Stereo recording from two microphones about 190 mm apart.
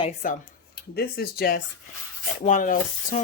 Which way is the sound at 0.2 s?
45° left (ahead or behind).